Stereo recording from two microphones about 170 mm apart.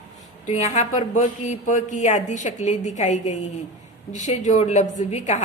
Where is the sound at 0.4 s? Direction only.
45° left (ahead or behind).